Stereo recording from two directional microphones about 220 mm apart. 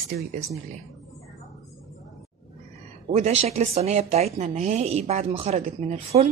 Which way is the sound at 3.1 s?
30° right (ahead or behind).